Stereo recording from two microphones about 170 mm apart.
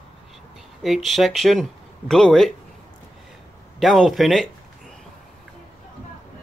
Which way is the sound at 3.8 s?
Centre (ahead or behind).